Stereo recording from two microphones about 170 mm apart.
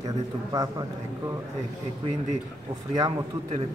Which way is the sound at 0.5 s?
20° right (ahead or behind).